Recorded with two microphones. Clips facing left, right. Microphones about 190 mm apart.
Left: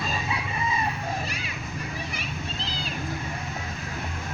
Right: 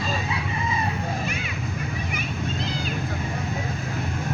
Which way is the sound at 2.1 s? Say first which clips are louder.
Right 5 dB; 30° left (ahead or behind).